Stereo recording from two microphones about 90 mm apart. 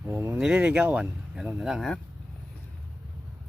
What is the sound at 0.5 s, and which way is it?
Speech, 15° right (ahead or behind).